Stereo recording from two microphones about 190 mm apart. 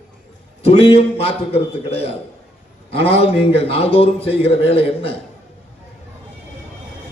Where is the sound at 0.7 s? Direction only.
30° left (ahead or behind).